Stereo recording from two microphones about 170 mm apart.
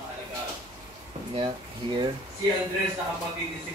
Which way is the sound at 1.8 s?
30° right (ahead or behind).